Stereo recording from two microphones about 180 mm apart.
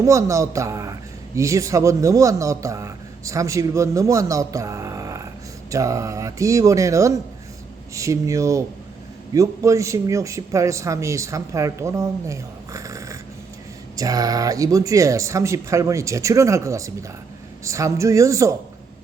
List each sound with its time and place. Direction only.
0.0 s a man's voice: 15° right (ahead or behind)